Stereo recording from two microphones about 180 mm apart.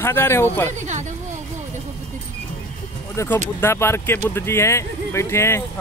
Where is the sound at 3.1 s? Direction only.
15° left (ahead or behind).